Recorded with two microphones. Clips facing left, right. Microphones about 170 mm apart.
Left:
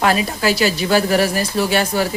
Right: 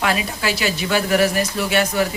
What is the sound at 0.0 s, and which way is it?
A woman's voice, 40° left (ahead or behind).